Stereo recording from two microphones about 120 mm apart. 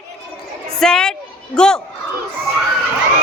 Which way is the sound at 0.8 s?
5° left (ahead or behind).